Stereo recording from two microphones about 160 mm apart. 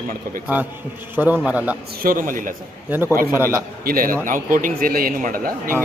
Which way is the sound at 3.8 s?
65° right (ahead or behind).